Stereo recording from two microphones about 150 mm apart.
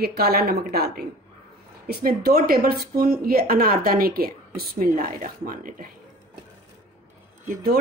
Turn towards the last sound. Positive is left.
turn(degrees=-85)